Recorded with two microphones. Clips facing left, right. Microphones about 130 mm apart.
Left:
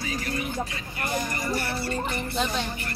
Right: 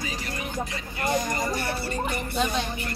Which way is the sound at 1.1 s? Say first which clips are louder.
Right 3 dB; 20° right (ahead or behind).